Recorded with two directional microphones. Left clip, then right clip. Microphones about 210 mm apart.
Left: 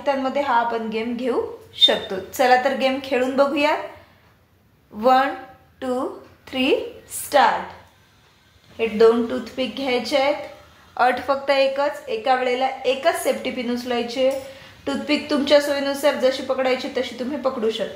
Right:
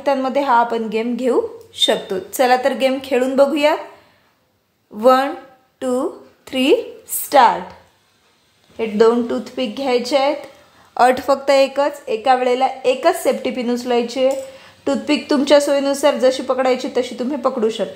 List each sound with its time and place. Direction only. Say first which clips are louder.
0.0 s a woman's voice: right 4 dB; 60° right (ahead or behind)
5.0 s a woman's voice: right 3 dB; 50° right (ahead or behind)
8.7 s a woman's voice: right 2 dB; 50° right (ahead or behind)